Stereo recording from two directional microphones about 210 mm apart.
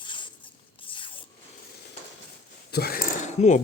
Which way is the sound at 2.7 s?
45° left (ahead or behind).